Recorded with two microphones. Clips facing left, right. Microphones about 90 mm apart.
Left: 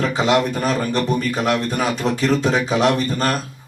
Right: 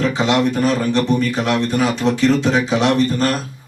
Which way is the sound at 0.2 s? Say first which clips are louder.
Even; 45° left (ahead or behind).